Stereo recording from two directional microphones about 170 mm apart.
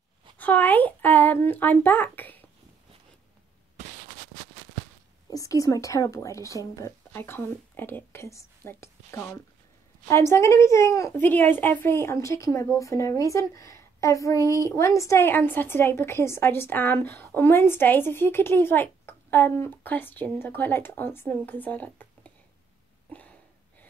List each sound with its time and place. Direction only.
0.4 s speech: 10° left (ahead or behind)
5.3 s a woman's voice: 20° left (ahead or behind)